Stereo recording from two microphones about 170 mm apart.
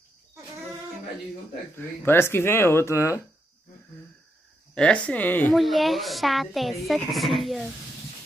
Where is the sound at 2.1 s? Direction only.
15° left (ahead or behind).